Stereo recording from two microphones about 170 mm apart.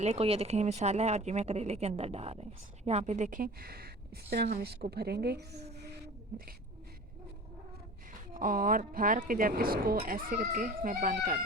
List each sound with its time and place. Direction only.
0.0 s a woman's voice: 40° right (ahead or behind); by 6.5 s 65° right (ahead or behind)
8.3 s speech: 55° right (ahead or behind)